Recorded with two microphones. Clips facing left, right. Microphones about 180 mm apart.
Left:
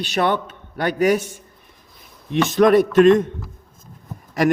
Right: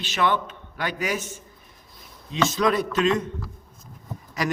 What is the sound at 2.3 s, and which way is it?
Speech, 55° left (ahead or behind).